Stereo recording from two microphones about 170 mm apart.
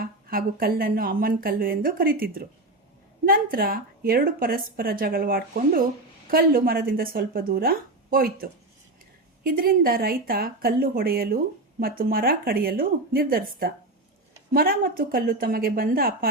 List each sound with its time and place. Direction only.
0.0 s a woman's voice: 60° right (ahead or behind)